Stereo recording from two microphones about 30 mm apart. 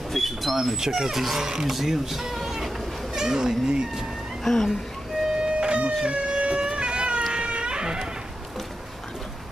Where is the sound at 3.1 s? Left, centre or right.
Centre.